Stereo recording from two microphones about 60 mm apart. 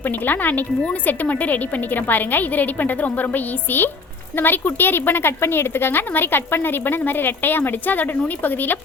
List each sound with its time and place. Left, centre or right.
0.0 s a woman's voice: left